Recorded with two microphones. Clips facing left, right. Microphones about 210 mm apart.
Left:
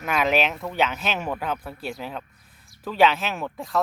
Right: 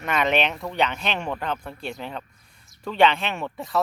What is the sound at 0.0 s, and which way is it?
Speech, centre (ahead or behind).